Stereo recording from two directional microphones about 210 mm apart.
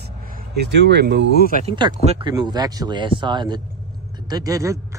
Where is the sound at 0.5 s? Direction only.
55° right (ahead or behind).